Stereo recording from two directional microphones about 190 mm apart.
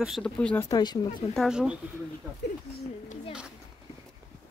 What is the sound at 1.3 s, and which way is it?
Speech, 5° right (ahead or behind).